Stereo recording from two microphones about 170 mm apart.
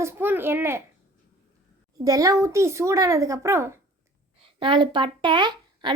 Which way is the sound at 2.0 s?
20° right (ahead or behind).